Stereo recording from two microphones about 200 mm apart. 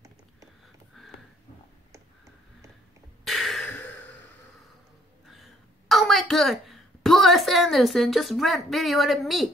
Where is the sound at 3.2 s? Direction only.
Centre (ahead or behind).